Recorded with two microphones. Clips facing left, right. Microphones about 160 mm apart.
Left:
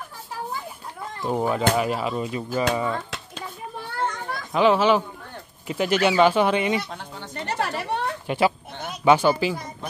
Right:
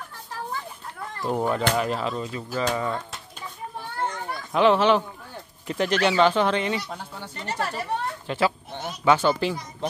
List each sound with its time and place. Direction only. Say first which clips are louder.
1.2 s speech: left 1 dB; 5° left (ahead or behind)
2.7 s speech: left 2 dB; 5° left (ahead or behind)
4.5 s speech: even; centre (ahead or behind)
7.4 s speech: left 2 dB; 70° left (ahead or behind)
8.3 s speech: left 2 dB; 15° left (ahead or behind)